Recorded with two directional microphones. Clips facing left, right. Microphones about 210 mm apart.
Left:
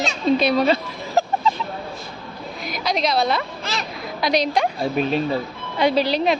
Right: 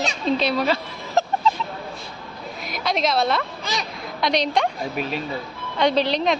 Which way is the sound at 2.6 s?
Centre (ahead or behind).